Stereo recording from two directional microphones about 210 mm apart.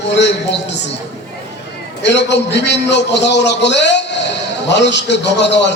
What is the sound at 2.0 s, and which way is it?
A man's voice, 55° left (ahead or behind).